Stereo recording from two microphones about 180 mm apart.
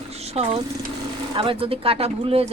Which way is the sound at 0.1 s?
35° right (ahead or behind).